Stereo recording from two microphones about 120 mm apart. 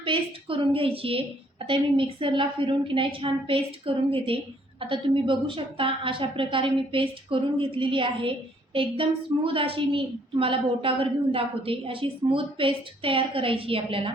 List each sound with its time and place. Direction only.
0.0 s a woman's voice: 45° right (ahead or behind)